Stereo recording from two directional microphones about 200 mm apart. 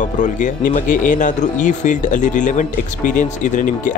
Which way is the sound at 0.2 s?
40° left (ahead or behind).